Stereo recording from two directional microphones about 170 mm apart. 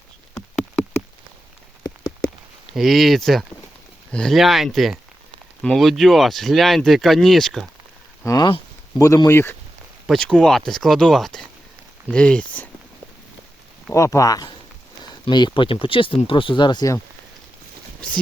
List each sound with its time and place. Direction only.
2.7 s speech: centre (ahead or behind)
8.2 s speech: 20° left (ahead or behind)
10.1 s speech: 5° left (ahead or behind)
13.9 s speech: 20° left (ahead or behind)